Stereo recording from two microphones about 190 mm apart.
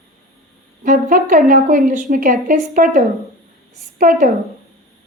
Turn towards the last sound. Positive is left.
turn(degrees=-45)  # may be behind; listen again after turning